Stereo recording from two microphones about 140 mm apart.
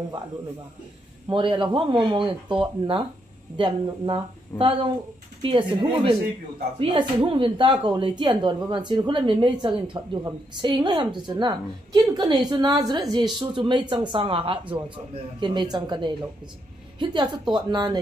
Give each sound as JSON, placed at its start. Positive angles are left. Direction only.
{"t": 1.3, "sound": "speech", "side_deg": -35}